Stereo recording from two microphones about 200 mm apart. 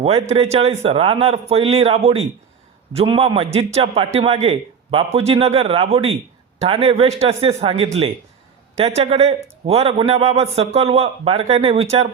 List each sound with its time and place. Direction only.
0.0 s a man's voice: 30° right (ahead or behind)